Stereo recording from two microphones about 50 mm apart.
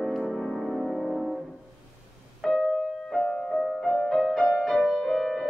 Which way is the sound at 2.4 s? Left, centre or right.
Centre.